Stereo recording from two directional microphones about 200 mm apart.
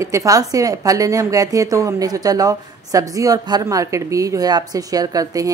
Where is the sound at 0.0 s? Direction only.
15° right (ahead or behind).